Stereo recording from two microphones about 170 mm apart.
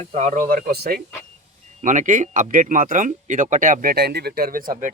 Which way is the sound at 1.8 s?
50° right (ahead or behind).